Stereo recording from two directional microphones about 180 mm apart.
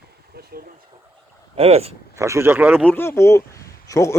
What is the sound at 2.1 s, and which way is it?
Speech, 15° right (ahead or behind).